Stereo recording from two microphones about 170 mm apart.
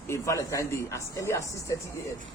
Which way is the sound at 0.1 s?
15° left (ahead or behind).